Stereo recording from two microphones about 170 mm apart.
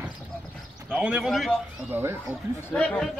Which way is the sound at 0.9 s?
5° right (ahead or behind).